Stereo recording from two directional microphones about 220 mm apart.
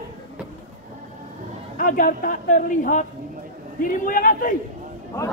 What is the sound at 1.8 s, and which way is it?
A man's voice, 35° left (ahead or behind).